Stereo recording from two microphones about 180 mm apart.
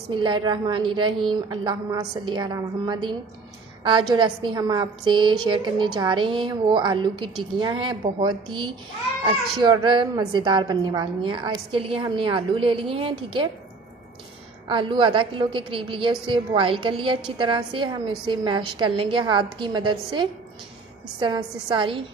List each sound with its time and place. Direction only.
0.1 s a woman's voice: 25° right (ahead or behind)
14.7 s a woman's voice: 30° right (ahead or behind)